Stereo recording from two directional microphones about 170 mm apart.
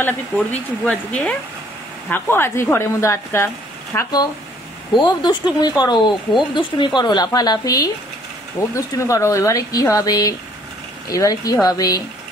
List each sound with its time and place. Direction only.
0.0 s speech: 10° left (ahead or behind)